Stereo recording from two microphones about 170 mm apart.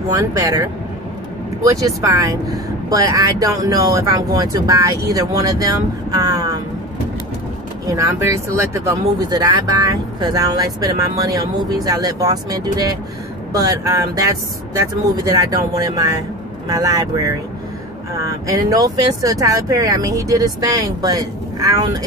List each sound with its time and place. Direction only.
0.1 s speech: 20° right (ahead or behind)
7.8 s speech: 20° right (ahead or behind)